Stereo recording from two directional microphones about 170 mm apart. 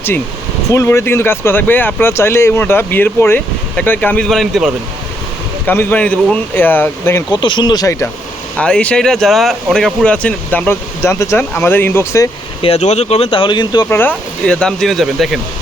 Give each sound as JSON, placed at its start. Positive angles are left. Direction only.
{"t": 0.7, "sound": "speech", "side_deg": 15}
{"t": 5.6, "sound": "speech", "side_deg": 10}
{"t": 7.4, "sound": "speech", "side_deg": 25}
{"t": 8.5, "sound": "speech", "side_deg": 5}
{"t": 12.6, "sound": "speech", "side_deg": 40}
{"t": 13.9, "sound": "speech", "side_deg": 10}